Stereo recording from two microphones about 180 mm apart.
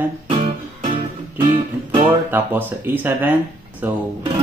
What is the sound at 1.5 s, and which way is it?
Music, 30° right (ahead or behind).